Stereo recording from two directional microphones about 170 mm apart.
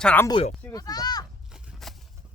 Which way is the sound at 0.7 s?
20° left (ahead or behind).